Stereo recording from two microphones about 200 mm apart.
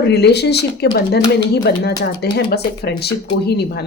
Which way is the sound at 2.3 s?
55° left (ahead or behind).